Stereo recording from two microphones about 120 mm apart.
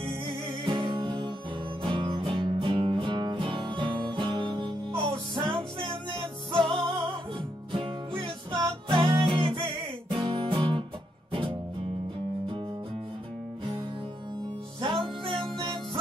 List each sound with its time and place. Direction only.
0.3 s music: 45° right (ahead or behind)
8.2 s music: 40° right (ahead or behind)
14.8 s music: 45° right (ahead or behind)